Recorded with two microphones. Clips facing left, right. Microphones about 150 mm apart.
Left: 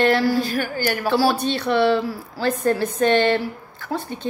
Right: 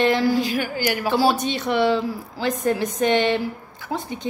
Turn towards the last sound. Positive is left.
turn(degrees=-15)  # may be behind; listen again after turning